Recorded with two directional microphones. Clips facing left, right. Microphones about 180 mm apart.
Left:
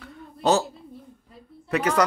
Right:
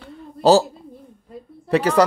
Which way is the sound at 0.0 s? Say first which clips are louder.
Right 7 dB; 30° right (ahead or behind).